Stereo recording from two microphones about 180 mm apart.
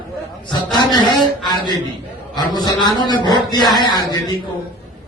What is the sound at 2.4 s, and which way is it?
A man's voice, 20° left (ahead or behind).